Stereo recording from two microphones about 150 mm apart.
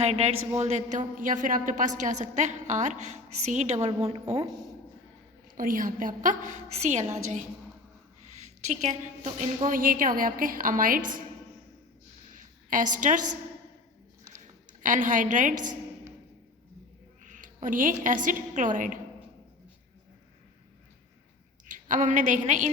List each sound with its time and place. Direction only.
0.0 s a man's voice: 45° right (ahead or behind)
5.5 s a woman's voice: 65° right (ahead or behind); by 7.4 s 50° right (ahead or behind)
8.6 s a woman's voice: 50° right (ahead or behind); by 11.2 s 65° right (ahead or behind)
12.3 s a sound: 60° right (ahead or behind)
14.7 s a woman's voice: 60° right (ahead or behind)
17.2 s a woman's voice: 60° right (ahead or behind)
21.7 s a woman's voice: 60° right (ahead or behind)